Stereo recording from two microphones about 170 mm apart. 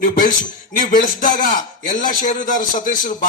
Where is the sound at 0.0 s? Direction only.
55° left (ahead or behind).